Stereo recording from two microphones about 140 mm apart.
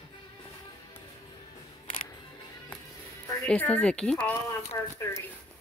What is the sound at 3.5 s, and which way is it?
Speech, 10° left (ahead or behind).